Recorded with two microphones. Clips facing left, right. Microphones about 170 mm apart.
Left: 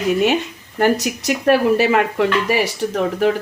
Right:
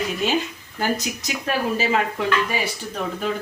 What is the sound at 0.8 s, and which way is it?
Speech, 70° left (ahead or behind).